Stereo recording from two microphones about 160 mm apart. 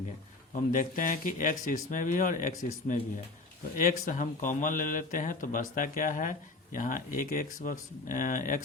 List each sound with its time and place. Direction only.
0.5 s speech: 55° left (ahead or behind)